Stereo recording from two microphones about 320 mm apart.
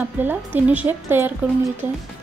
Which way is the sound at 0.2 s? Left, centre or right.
Centre.